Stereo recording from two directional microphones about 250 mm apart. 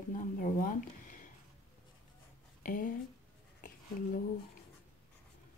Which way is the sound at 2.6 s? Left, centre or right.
Left.